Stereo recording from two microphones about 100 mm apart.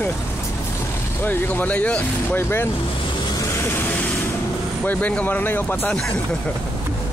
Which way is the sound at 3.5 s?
25° left (ahead or behind).